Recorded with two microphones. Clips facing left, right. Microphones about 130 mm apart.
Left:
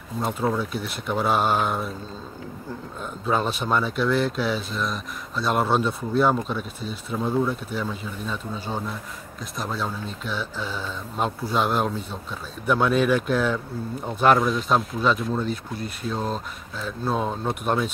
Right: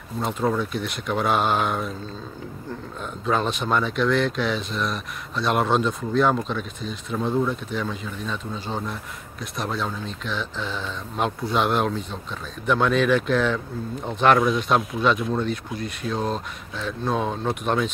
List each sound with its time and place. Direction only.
0.2 s speech: 5° left (ahead or behind)
3.0 s speech: 5° left (ahead or behind)